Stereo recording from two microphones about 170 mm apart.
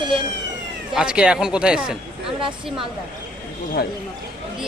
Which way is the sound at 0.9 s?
5° right (ahead or behind).